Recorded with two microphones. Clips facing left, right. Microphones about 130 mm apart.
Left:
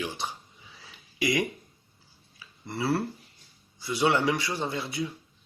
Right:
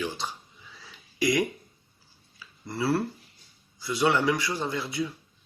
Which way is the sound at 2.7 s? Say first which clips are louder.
Right 1 dB; 25° left (ahead or behind).